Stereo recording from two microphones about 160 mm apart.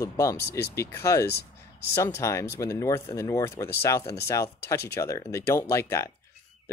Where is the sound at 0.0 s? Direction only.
20° left (ahead or behind).